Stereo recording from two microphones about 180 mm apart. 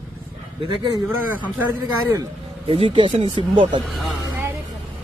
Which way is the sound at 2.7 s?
30° right (ahead or behind).